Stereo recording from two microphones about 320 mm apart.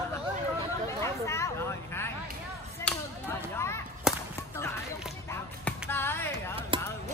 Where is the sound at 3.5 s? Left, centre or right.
Centre.